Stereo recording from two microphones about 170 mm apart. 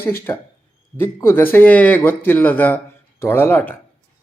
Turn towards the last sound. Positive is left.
turn(degrees=10)  # may be behind; listen again after turning